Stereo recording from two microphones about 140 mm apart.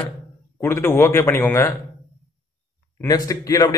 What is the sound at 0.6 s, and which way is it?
A man's voice, 15° left (ahead or behind).